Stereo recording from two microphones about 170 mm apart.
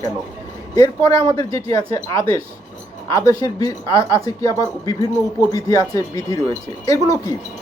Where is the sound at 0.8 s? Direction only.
20° left (ahead or behind).